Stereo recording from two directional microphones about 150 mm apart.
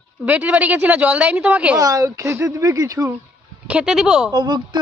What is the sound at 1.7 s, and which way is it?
A woman's voice, 20° right (ahead or behind).